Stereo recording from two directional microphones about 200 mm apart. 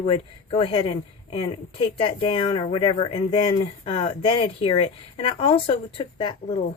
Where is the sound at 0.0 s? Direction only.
25° left (ahead or behind).